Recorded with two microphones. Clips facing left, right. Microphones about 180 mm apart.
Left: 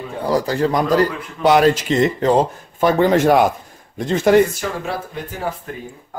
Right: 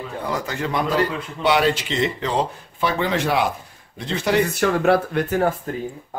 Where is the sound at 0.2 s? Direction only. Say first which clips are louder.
Left 9 dB; 35° left (ahead or behind).